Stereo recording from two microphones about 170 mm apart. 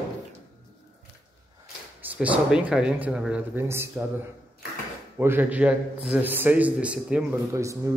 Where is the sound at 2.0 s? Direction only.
10° right (ahead or behind).